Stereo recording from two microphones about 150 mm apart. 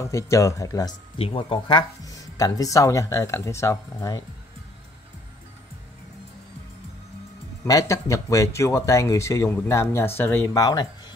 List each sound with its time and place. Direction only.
0.0 s speech: 20° left (ahead or behind)
1.1 s speech: 40° left (ahead or behind); by 4.2 s 20° left (ahead or behind)
7.9 s speech: 20° left (ahead or behind)